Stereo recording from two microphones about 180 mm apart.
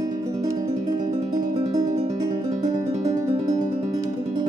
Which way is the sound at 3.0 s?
45° right (ahead or behind).